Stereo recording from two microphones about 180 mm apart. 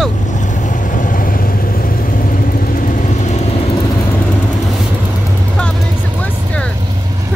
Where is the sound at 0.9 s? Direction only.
50° left (ahead or behind).